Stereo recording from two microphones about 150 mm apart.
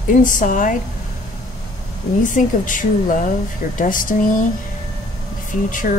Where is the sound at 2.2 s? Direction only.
60° left (ahead or behind).